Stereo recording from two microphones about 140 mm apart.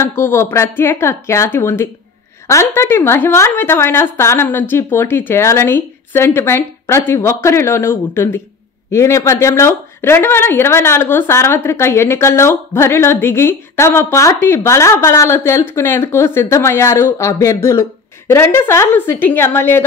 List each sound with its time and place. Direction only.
0.0 s a woman's voice: 15° left (ahead or behind)